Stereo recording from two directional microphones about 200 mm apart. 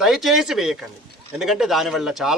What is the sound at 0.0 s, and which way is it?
A man's voice, centre (ahead or behind).